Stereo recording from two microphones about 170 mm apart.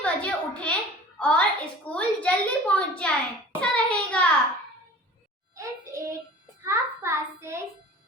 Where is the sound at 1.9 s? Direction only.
5° left (ahead or behind).